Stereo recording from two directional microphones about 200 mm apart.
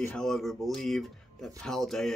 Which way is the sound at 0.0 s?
5° left (ahead or behind).